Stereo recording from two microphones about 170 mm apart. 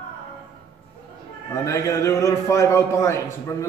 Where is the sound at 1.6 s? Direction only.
20° left (ahead or behind).